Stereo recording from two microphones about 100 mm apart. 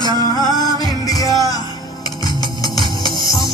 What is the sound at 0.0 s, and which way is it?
Music, 40° left (ahead or behind).